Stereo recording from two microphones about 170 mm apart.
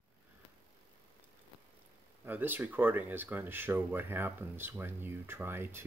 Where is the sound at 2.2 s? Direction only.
10° right (ahead or behind).